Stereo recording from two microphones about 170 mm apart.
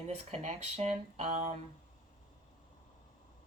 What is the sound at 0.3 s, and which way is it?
Speech, 45° right (ahead or behind).